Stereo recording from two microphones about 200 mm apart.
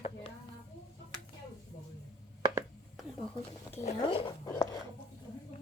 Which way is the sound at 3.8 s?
30° left (ahead or behind).